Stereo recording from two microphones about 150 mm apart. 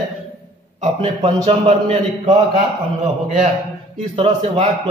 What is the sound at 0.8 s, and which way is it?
A man's voice, 45° right (ahead or behind).